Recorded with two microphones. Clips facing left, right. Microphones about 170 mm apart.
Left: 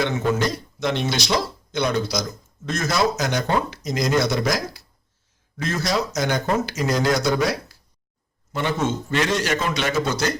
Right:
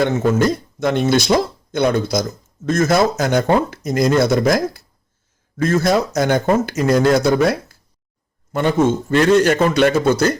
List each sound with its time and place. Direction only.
0.0 s speech: 50° right (ahead or behind)